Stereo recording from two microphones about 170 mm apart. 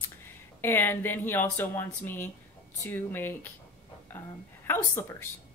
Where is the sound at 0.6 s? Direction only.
15° left (ahead or behind).